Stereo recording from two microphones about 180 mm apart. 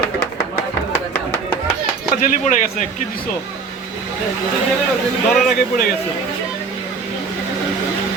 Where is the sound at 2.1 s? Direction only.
45° left (ahead or behind).